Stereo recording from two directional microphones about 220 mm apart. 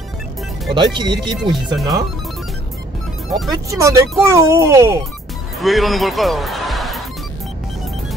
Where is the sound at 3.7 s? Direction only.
15° right (ahead or behind).